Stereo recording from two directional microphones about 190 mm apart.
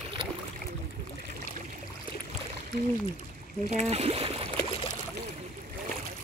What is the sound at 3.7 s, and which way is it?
Speech, 35° right (ahead or behind).